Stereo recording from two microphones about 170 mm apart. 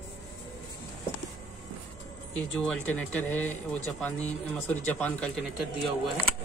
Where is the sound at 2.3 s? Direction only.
5° left (ahead or behind).